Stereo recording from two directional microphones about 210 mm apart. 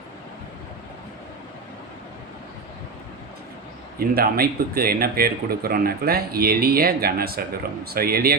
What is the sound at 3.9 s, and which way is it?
Speech, 45° right (ahead or behind).